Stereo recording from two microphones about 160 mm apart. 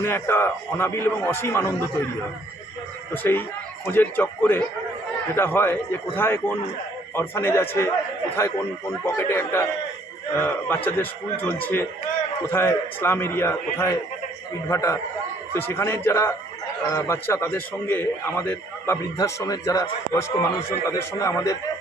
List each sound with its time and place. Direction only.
0.0 s a man's voice: 15° left (ahead or behind)
3.1 s a man's voice: 15° left (ahead or behind)